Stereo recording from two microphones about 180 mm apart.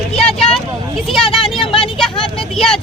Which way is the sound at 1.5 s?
30° left (ahead or behind).